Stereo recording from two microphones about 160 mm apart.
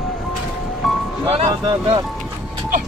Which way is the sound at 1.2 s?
35° right (ahead or behind).